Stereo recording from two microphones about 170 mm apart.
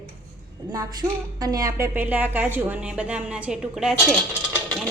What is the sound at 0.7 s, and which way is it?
A woman's voice, 20° right (ahead or behind).